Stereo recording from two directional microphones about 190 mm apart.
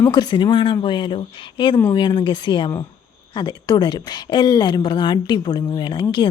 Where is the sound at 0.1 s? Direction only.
25° left (ahead or behind).